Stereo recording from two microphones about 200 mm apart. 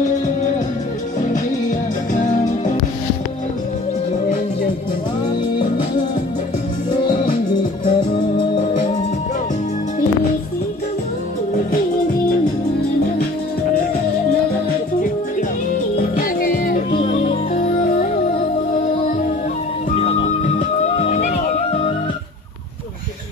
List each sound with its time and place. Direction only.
1.3 s music: 40° left (ahead or behind)
7.8 s music: 25° left (ahead or behind)
16.0 s music: 45° left (ahead or behind)
16.9 s music: 35° left (ahead or behind)
20.5 s music: 35° left (ahead or behind)